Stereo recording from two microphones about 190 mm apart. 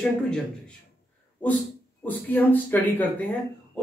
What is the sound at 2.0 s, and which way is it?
Speech, 10° left (ahead or behind).